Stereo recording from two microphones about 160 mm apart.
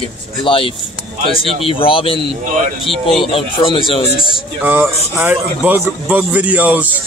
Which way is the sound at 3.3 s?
35° left (ahead or behind).